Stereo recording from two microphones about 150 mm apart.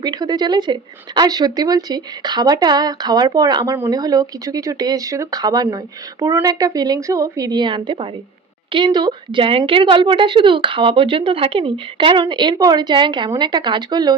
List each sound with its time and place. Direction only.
0.0 s a woman's voice: 25° right (ahead or behind)